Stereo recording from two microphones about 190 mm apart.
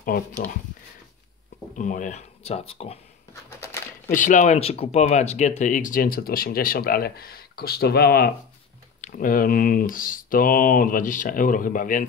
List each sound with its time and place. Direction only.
0.0 s speech: 45° left (ahead or behind)
1.8 s speech: 40° left (ahead or behind)
3.4 s crumpling: 15° left (ahead or behind)
4.1 s speech: 40° left (ahead or behind)
9.0 s speech: 45° left (ahead or behind)